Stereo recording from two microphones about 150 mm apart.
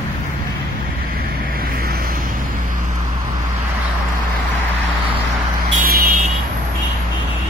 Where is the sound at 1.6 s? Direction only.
80° right.